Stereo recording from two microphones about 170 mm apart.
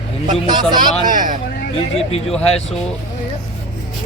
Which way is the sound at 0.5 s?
25° right (ahead or behind).